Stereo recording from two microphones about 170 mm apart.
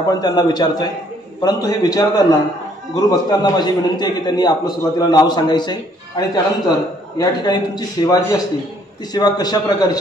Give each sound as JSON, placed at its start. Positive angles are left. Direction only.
{"t": 0.1, "sound": "a man's voice", "side_deg": 25}